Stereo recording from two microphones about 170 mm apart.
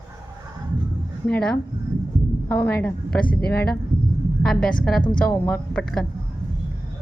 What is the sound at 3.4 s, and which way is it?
Speech, 65° left (ahead or behind).